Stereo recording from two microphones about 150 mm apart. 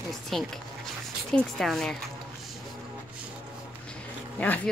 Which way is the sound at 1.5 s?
5° left (ahead or behind).